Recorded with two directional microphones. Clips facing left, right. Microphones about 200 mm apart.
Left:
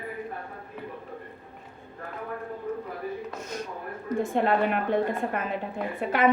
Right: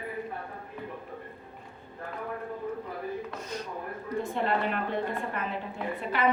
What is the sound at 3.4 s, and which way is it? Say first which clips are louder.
A woman's voice: left 1 dB; 45° left (ahead or behind).